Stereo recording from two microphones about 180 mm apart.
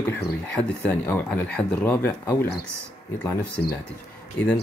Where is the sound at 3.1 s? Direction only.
10° left (ahead or behind).